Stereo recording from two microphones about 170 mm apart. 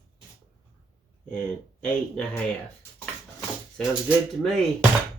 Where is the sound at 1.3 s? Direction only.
5° left (ahead or behind).